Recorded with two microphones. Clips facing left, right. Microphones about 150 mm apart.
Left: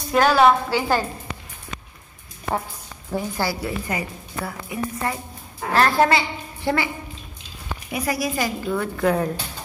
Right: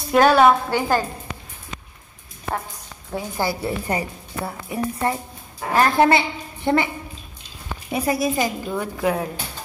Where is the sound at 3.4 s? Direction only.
25° right (ahead or behind).